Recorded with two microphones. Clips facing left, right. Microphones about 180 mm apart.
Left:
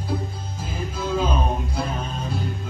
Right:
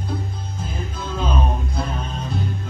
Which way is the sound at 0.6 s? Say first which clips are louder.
Left 3 dB; 10° left (ahead or behind).